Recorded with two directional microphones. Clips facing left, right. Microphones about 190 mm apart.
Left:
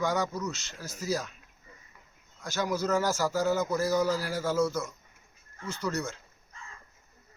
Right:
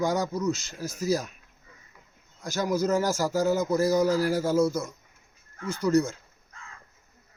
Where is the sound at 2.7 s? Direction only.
15° right (ahead or behind).